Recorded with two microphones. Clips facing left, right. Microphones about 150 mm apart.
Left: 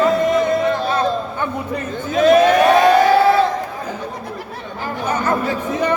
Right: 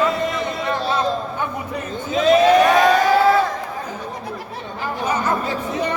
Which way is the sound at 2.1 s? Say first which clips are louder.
Left 3 dB; 45° left (ahead or behind).